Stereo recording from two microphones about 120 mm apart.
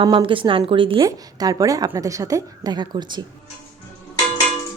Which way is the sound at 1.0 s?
30° right (ahead or behind).